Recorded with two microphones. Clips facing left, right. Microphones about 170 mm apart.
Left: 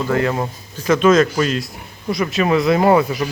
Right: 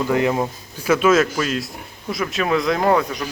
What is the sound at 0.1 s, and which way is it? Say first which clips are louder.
Speech: even; 15° right (ahead or behind).